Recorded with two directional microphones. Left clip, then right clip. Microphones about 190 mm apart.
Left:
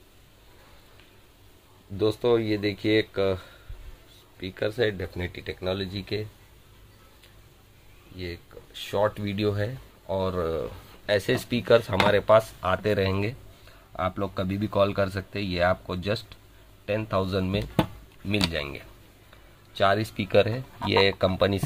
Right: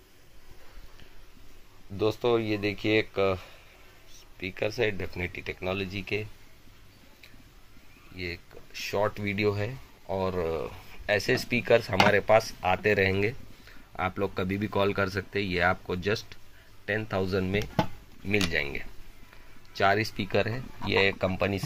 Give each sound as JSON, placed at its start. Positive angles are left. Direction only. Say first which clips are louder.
{"t": 2.0, "sound": "speech", "louder": "left 3 dB", "side_deg": -5}
{"t": 8.9, "sound": "speech", "louder": "left 3 dB", "side_deg": -5}